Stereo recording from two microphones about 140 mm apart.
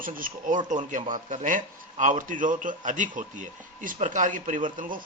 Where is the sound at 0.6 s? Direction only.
65° right (ahead or behind).